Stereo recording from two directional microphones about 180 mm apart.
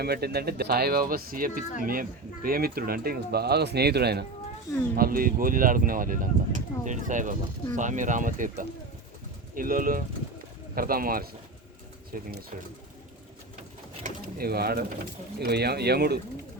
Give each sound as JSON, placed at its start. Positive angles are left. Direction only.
{"t": 0.0, "sound": "speech", "side_deg": -60}
{"t": 4.9, "sound": "speech", "side_deg": -55}
{"t": 14.0, "sound": "speech", "side_deg": -55}